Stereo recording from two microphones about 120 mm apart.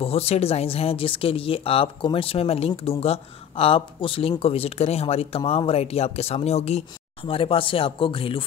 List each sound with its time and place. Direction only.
0.0 s speech: 55° left (ahead or behind)
7.2 s speech: 50° left (ahead or behind)